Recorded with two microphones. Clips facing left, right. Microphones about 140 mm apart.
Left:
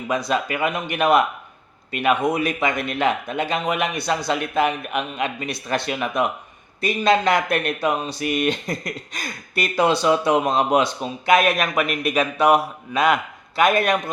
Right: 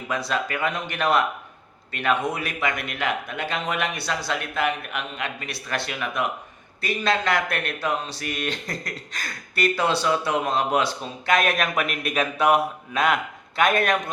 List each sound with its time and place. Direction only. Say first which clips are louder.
0.1 s a man's voice: left 4 dB; 15° left (ahead or behind)